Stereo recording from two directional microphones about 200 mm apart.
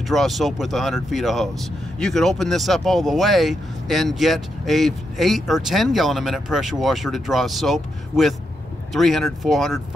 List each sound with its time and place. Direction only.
0.1 s speech: centre (ahead or behind)